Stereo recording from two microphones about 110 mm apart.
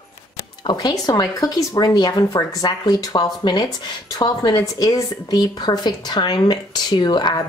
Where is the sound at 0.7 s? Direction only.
35° left (ahead or behind).